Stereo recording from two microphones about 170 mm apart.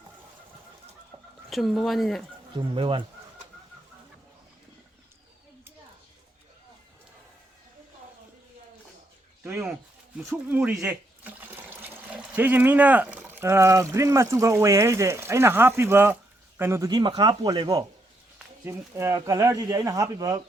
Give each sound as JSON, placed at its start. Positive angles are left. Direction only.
{"t": 1.1, "sound": "chicken", "side_deg": -40}
{"t": 1.5, "sound": "speech", "side_deg": 0}
{"t": 2.5, "sound": "speech", "side_deg": -25}
{"t": 9.4, "sound": "a sound", "side_deg": -5}
{"t": 10.2, "sound": "speech", "side_deg": -10}
{"t": 18.3, "sound": "speech", "side_deg": -15}